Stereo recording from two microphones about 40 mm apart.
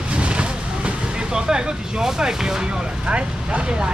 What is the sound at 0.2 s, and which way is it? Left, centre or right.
Vehicle, right.